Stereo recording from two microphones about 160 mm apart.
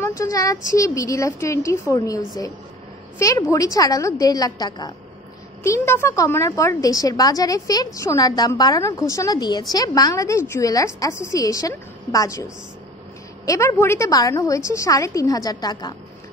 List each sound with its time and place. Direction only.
0.0 s a woman's voice: 20° left (ahead or behind)
13.5 s a woman's voice: 15° left (ahead or behind)